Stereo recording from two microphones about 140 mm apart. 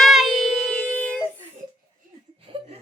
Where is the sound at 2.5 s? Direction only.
40° right (ahead or behind).